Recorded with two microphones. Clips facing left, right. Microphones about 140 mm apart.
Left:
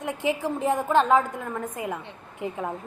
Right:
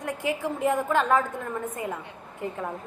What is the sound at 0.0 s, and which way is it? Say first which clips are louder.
A woman's voice: left 2 dB; 20° left (ahead or behind).